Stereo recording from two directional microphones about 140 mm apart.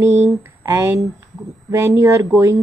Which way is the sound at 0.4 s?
20° right (ahead or behind).